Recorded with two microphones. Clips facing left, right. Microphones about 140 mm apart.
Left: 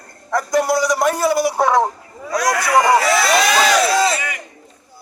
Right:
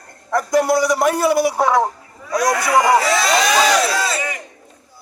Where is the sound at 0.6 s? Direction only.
55° right (ahead or behind).